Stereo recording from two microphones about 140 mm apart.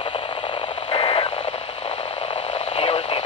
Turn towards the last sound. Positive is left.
turn(degrees=45)  # may be behind; listen again after turning